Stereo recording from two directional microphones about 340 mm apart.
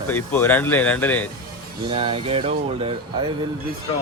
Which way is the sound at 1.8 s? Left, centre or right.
Centre.